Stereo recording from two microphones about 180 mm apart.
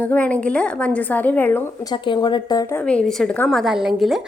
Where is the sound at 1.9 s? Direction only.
25° left (ahead or behind).